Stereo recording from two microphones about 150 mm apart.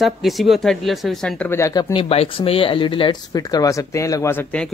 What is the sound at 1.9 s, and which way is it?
A man's voice, 40° left (ahead or behind).